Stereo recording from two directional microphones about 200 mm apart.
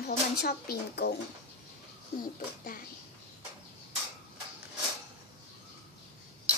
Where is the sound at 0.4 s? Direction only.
55° left (ahead or behind).